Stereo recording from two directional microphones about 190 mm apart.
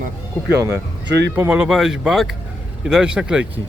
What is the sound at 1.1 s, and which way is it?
Speech, 65° right (ahead or behind).